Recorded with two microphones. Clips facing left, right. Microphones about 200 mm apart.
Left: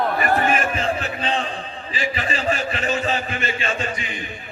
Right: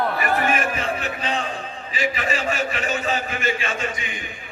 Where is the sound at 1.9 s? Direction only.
30° left (ahead or behind).